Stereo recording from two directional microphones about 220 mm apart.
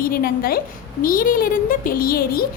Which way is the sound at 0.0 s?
45° left (ahead or behind).